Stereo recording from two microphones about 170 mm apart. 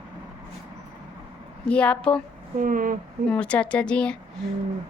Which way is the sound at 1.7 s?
5° left (ahead or behind).